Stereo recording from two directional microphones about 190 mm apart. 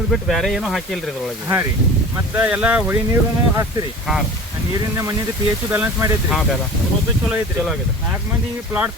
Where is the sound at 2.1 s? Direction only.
10° right (ahead or behind).